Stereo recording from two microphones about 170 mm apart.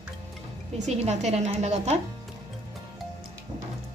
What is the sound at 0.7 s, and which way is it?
A woman's voice, 40° right (ahead or behind).